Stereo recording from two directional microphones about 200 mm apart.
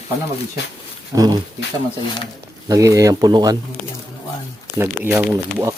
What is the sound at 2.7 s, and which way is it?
Speech, 15° right (ahead or behind).